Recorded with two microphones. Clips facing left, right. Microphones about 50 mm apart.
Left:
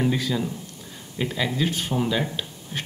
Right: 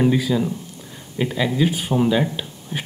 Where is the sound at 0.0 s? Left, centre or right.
Centre.